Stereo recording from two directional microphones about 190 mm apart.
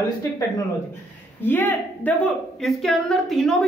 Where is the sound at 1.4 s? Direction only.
10° left (ahead or behind).